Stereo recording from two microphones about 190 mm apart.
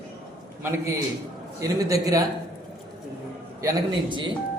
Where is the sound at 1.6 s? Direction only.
20° right (ahead or behind).